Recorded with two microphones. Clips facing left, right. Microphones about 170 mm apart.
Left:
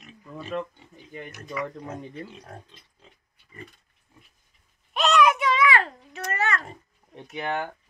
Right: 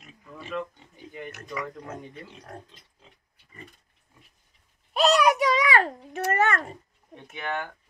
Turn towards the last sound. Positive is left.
turn(degrees=25)  # may be behind; listen again after turning